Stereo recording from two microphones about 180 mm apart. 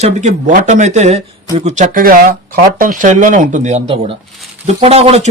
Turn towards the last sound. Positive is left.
turn(degrees=-35)  # may be behind; listen again after turning